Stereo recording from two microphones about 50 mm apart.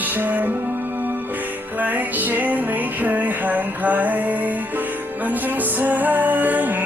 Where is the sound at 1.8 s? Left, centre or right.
Right.